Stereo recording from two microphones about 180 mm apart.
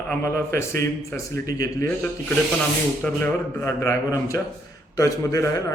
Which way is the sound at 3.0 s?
10° left (ahead or behind).